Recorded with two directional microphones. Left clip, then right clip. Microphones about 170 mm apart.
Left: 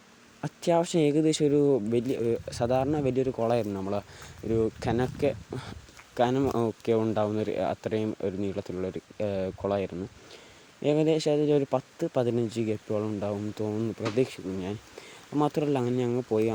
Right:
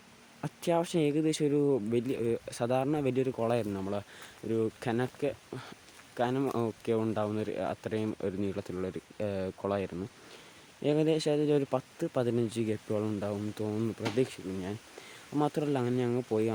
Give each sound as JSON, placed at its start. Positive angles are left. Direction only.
{"t": 0.4, "sound": "speech", "side_deg": 15}
{"t": 8.2, "sound": "speech", "side_deg": 5}